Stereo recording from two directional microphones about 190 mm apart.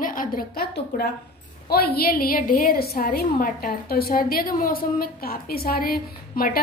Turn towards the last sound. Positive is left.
turn(degrees=50)  # may be behind; listen again after turning